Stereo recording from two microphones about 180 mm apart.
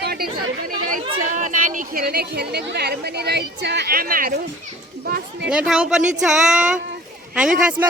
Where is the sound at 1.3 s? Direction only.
45° right (ahead or behind).